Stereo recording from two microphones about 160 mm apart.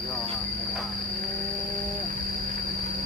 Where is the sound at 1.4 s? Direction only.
60° right (ahead or behind).